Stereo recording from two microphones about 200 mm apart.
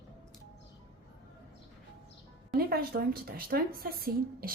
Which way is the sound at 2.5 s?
50° right (ahead or behind).